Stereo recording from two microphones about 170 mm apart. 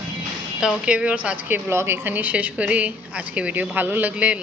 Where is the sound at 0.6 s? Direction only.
5° right (ahead or behind).